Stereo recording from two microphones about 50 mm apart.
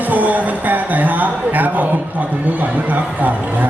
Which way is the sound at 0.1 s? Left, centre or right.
Right.